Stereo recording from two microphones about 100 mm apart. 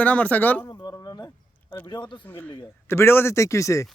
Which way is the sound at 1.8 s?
50° left (ahead or behind).